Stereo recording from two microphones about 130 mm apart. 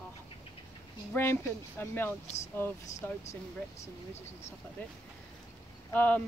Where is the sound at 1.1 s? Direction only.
20° left (ahead or behind).